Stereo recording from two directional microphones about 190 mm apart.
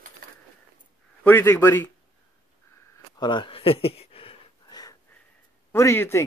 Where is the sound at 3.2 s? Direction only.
25° left (ahead or behind).